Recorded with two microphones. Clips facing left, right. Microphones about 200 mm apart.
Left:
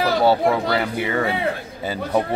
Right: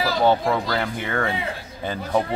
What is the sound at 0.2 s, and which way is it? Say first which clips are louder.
A man's voice: even; 10° left (ahead or behind).